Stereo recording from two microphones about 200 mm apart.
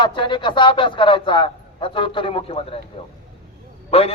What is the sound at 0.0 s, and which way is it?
A man's voice, 25° left (ahead or behind).